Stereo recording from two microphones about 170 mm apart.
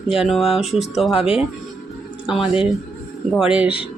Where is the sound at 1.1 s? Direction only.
35° left (ahead or behind).